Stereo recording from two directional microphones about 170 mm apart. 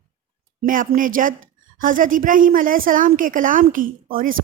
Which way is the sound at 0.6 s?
55° right (ahead or behind).